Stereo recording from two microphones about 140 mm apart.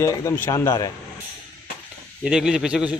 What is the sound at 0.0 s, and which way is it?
Speech, 25° left (ahead or behind).